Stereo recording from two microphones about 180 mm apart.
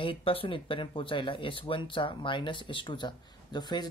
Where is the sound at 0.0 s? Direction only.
30° left (ahead or behind).